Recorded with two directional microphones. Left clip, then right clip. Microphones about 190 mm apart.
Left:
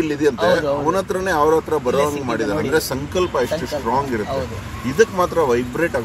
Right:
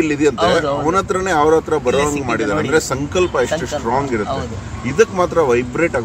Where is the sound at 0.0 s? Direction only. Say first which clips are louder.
Right 3 dB; 20° right (ahead or behind).